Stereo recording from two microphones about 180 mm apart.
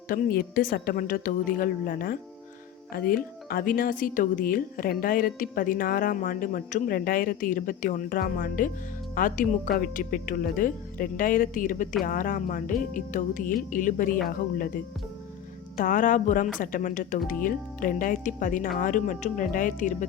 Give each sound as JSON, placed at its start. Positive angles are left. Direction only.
{"t": 0.1, "sound": "speech", "side_deg": 55}
{"t": 15.8, "sound": "speech", "side_deg": 45}